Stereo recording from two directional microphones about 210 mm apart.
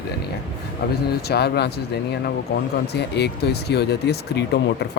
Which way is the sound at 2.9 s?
50° left (ahead or behind).